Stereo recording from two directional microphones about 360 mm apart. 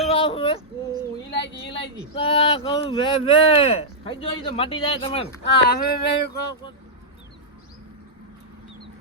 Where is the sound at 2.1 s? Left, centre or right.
Centre.